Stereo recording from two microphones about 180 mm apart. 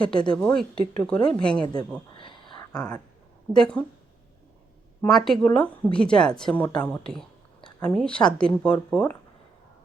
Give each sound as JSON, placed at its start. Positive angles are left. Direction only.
{"t": 0.0, "sound": "a woman's voice", "side_deg": 5}
{"t": 2.1, "sound": "a sound", "side_deg": 25}
{"t": 2.7, "sound": "a woman's voice", "side_deg": 5}
{"t": 4.9, "sound": "a woman's voice", "side_deg": 0}